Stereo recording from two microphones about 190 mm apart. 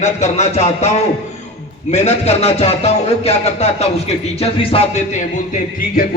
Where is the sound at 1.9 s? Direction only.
35° left (ahead or behind).